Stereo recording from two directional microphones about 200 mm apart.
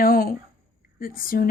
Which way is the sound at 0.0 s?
45° left (ahead or behind).